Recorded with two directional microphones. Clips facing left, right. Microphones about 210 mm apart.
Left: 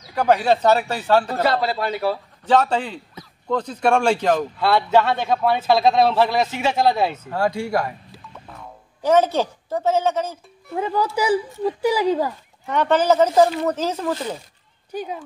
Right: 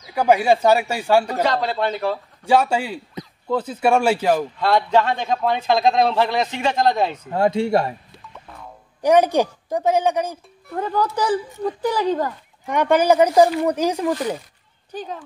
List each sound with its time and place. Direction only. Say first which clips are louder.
0.1 s speech: right 1 dB; 10° right (ahead or behind)
1.4 s a man's voice: even; 5° left (ahead or behind)
2.4 s speech: even; 10° right (ahead or behind)
4.6 s a man's voice: even; 5° left (ahead or behind)
7.2 s speech: right 4 dB; 20° right (ahead or behind)
8.1 s music: left 1 dB; 5° left (ahead or behind)
9.0 s speech: right 2 dB; 15° right (ahead or behind)
10.7 s a man's voice: even; 5° left (ahead or behind)
12.6 s speech: right 1 dB; 15° right (ahead or behind)
14.9 s a man's voice: left 2 dB; 10° left (ahead or behind)